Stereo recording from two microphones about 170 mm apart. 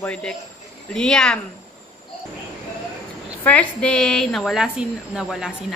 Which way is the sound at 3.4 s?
10° left (ahead or behind).